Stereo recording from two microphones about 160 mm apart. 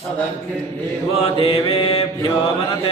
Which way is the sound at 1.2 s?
35° left (ahead or behind).